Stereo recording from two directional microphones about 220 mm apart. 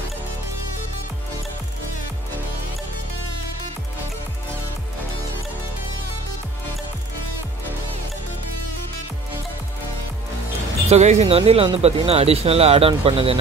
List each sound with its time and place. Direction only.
10.9 s speech: 30° right (ahead or behind)